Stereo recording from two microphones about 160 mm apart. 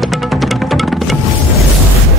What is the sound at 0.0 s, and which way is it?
Music, centre (ahead or behind).